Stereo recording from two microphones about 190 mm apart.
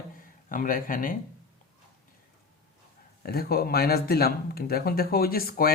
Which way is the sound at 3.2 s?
55° left (ahead or behind).